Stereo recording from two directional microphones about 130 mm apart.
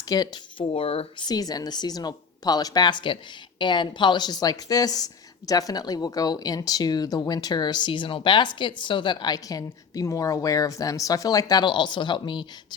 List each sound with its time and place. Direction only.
0.1 s speech: 30° left (ahead or behind)
0.7 s speech: 45° left (ahead or behind)
1.2 s speech: 30° left (ahead or behind)